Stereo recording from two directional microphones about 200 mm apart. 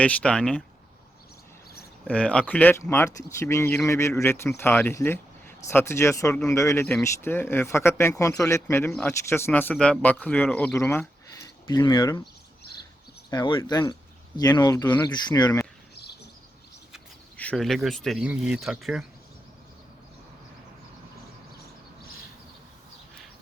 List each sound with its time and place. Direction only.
0.0 s speech: 5° left (ahead or behind)
2.0 s speech: 5° left (ahead or behind); by 12.2 s 20° left (ahead or behind)
13.3 s speech: 20° left (ahead or behind)
16.9 s speech: 5° left (ahead or behind)